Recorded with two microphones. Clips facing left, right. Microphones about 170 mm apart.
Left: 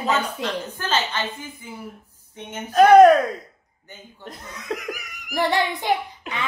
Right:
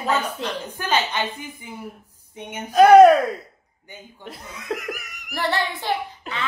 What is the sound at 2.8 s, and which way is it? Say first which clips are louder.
Speech: right 1 dB; 5° right (ahead or behind).